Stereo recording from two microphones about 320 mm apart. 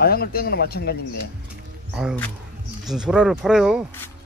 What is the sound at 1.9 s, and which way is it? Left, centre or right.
Speech, centre.